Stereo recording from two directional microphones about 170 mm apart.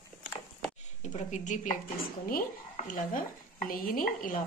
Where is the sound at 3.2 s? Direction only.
55° left (ahead or behind).